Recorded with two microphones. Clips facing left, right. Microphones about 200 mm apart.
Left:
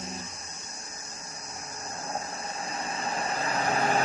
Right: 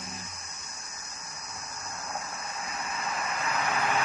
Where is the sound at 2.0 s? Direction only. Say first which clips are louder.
Left 3 dB; 30° left (ahead or behind).